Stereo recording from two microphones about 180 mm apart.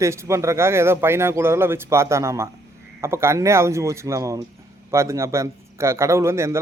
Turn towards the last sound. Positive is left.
turn(degrees=-15)  # may be behind; listen again after turning